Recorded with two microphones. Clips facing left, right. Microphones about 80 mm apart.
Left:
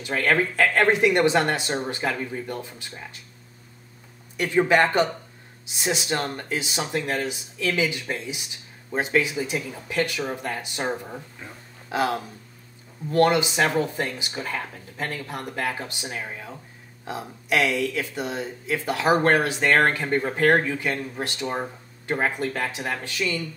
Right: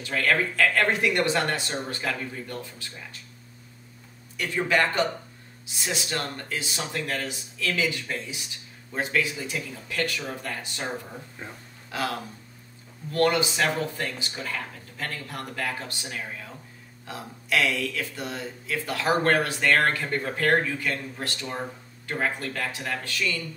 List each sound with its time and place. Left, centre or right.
0.0 s speech: left
4.4 s speech: left